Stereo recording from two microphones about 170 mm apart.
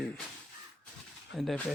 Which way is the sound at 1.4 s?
Centre (ahead or behind).